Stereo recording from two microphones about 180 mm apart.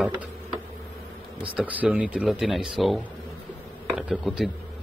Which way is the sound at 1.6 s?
5° right (ahead or behind).